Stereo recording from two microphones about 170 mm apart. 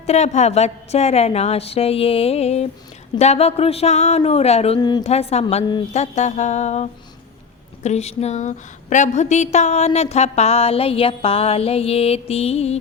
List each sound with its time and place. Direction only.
0.0 s a woman's voice: 40° left (ahead or behind)
4.8 s a woman's voice: 25° left (ahead or behind)
5.0 s a woman's voice: 40° left (ahead or behind)
5.9 s music: 40° left (ahead or behind)
7.8 s a woman's voice: 40° left (ahead or behind)